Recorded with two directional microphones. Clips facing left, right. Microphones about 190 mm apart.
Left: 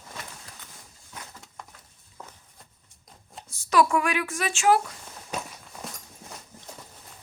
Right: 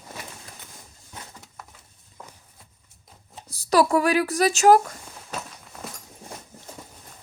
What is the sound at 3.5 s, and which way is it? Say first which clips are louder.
Speech: right 3 dB; 35° right (ahead or behind).